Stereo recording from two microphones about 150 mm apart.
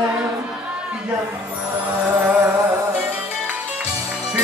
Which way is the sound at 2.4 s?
20° right (ahead or behind).